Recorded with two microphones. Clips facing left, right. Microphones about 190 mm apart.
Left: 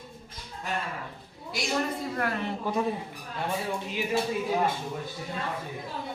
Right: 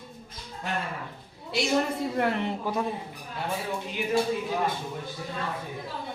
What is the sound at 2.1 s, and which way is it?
Speech, 20° right (ahead or behind).